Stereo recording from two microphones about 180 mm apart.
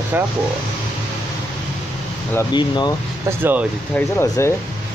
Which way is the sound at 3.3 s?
10° right (ahead or behind).